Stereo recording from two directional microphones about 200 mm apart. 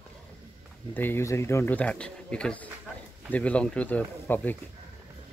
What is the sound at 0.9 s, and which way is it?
Speech, 10° left (ahead or behind).